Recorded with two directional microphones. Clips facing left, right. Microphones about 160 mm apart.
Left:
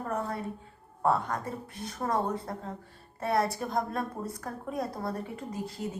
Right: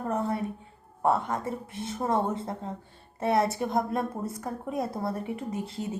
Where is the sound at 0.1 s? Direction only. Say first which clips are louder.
Right 4 dB; 20° right (ahead or behind).